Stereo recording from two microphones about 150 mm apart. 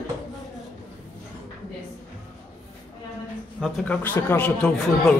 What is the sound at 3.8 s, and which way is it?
Speech, 15° left (ahead or behind).